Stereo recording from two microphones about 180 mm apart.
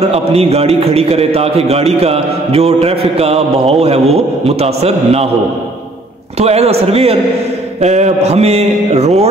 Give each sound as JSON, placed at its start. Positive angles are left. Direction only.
{"t": 0.1, "sound": "speech", "side_deg": -35}
{"t": 6.4, "sound": "speech", "side_deg": -35}